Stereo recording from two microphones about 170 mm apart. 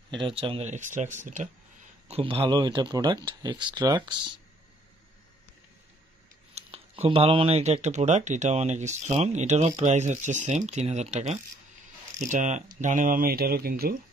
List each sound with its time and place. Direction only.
0.1 s speech: 30° right (ahead or behind); by 1.5 s 45° right (ahead or behind)
2.0 s speech: 35° right (ahead or behind)
6.5 s speech: 35° right (ahead or behind); by 13.9 s 60° right (ahead or behind)